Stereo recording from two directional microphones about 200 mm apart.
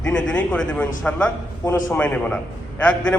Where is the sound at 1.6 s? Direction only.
15° left (ahead or behind).